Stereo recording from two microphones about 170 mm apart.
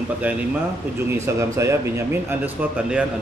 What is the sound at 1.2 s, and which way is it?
A man's voice, 15° right (ahead or behind).